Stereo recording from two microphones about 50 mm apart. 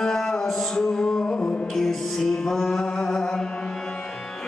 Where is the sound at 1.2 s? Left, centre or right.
Left.